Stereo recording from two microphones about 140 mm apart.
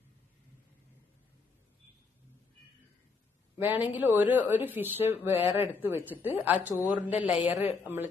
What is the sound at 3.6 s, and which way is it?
Speech, 10° right (ahead or behind).